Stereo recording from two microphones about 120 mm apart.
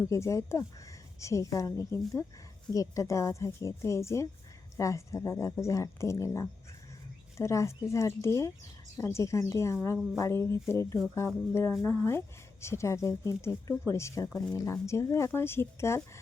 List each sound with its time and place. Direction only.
0.1 s speech: 25° left (ahead or behind)